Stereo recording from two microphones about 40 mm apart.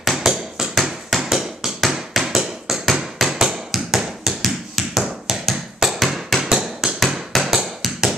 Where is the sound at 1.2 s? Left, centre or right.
Centre.